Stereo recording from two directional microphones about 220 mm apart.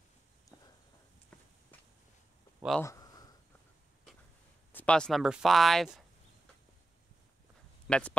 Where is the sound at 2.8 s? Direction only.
15° left (ahead or behind).